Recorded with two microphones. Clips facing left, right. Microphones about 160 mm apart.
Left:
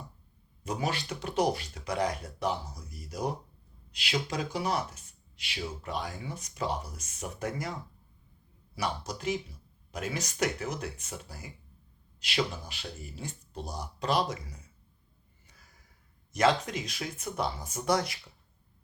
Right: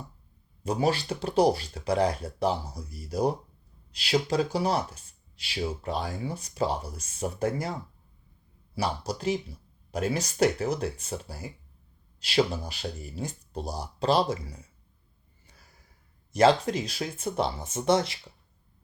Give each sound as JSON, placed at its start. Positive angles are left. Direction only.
{"t": 0.6, "sound": "speech", "side_deg": -30}
{"t": 16.3, "sound": "speech", "side_deg": -30}